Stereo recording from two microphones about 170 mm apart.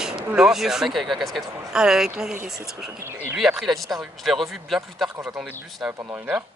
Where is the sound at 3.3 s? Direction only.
Centre (ahead or behind).